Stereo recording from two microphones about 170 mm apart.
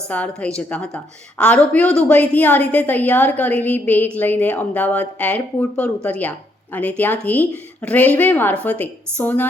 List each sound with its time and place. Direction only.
0.1 s a woman's voice: 10° left (ahead or behind)